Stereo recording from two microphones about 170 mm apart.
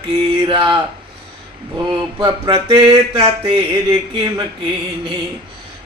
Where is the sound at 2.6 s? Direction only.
30° right (ahead or behind).